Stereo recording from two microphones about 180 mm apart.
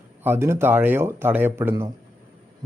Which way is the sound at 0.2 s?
15° right (ahead or behind).